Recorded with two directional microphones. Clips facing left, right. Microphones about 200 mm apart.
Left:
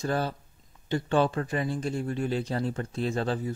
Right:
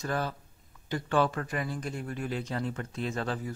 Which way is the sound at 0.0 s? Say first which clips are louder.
Left 4 dB; 30° left (ahead or behind).